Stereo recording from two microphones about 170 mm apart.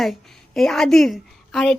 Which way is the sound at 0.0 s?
Centre (ahead or behind).